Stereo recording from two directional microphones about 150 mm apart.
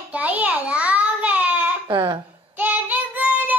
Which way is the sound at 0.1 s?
10° right (ahead or behind).